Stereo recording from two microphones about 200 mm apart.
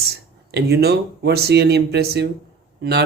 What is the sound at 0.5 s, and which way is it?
Speech, 55° right (ahead or behind).